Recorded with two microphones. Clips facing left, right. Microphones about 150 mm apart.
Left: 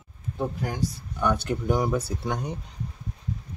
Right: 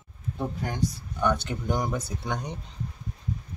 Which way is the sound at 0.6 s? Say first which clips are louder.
Even; 5° left (ahead or behind).